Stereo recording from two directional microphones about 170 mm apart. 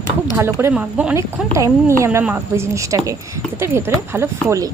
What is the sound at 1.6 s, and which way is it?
A woman's voice, 20° right (ahead or behind).